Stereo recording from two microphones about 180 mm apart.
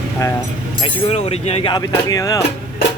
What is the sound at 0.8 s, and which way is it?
Speech, 35° left (ahead or behind).